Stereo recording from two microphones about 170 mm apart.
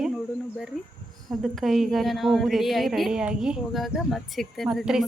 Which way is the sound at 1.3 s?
Centre (ahead or behind).